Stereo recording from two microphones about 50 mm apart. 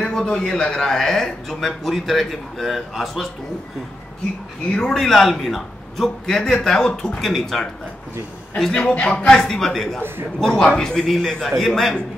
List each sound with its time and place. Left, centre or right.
0.0 s speech: centre
4.7 s a man's voice: centre
7.2 s a man's voice: centre
8.7 s a man's voice: left
9.2 s a man's voice: centre